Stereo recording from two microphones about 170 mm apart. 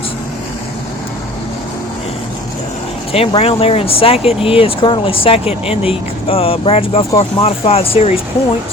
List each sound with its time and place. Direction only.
3.1 s speech: 35° left (ahead or behind)